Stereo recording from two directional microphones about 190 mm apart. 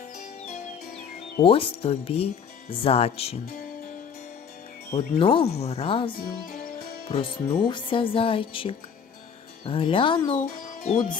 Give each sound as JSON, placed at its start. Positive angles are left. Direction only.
{"t": 0.9, "sound": "speech", "side_deg": 30}
{"t": 4.9, "sound": "speech", "side_deg": 30}
{"t": 6.1, "sound": "music", "side_deg": 50}
{"t": 7.1, "sound": "speech", "side_deg": 25}
{"t": 10.3, "sound": "a child's voice", "side_deg": 40}